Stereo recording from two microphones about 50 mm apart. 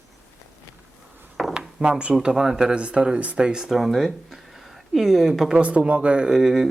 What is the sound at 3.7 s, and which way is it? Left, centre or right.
Speech, centre.